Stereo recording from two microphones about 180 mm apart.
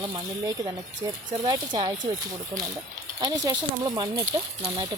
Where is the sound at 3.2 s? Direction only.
20° right (ahead or behind).